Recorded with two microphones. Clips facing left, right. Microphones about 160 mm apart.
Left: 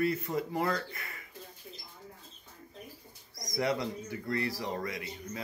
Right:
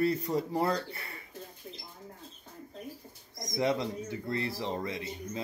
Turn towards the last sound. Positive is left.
turn(degrees=-25)  # may be behind; listen again after turning